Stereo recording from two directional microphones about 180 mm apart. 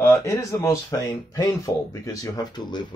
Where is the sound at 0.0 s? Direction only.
15° left (ahead or behind).